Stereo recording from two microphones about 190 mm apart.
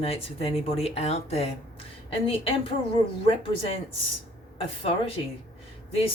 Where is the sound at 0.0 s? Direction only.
30° left (ahead or behind).